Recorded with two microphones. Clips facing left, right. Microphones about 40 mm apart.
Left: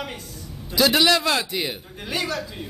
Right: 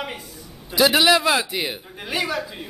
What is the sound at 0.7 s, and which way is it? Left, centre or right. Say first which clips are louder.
A man's voice: right 2 dB; centre.